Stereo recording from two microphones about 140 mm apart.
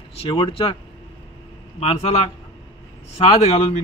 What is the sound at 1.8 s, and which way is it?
Speech, 45° left (ahead or behind).